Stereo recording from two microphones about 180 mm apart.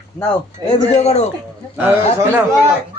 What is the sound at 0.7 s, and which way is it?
Speech, 35° left (ahead or behind).